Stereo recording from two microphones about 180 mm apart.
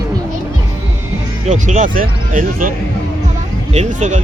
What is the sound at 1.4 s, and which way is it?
Speech, 45° right (ahead or behind).